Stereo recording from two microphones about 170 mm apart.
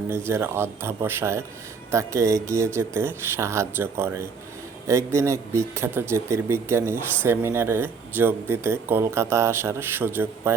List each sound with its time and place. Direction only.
0.3 s speech: 15° right (ahead or behind)